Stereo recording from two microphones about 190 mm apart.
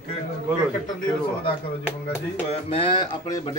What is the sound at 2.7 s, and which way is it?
Speech, 25° left (ahead or behind).